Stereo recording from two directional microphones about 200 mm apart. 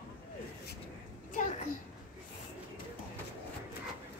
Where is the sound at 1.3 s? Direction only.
40° left (ahead or behind).